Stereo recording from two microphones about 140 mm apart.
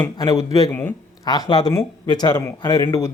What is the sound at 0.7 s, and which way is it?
Speech, 15° left (ahead or behind).